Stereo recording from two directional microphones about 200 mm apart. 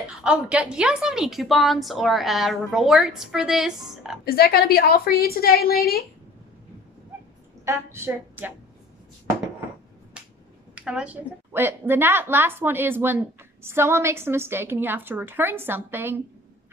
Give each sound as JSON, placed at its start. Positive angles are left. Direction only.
{"t": 0.2, "sound": "a woman's voice", "side_deg": -5}
{"t": 4.2, "sound": "a woman's voice", "side_deg": 50}
{"t": 7.6, "sound": "a woman's voice", "side_deg": -15}
{"t": 10.2, "sound": "finger snapping", "side_deg": -5}
{"t": 10.7, "sound": "a woman's voice", "side_deg": -5}